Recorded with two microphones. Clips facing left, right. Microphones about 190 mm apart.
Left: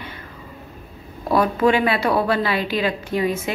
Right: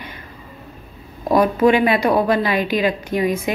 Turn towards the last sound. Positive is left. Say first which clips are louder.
# right 2 dB
turn(degrees=-15)  # may be behind; listen again after turning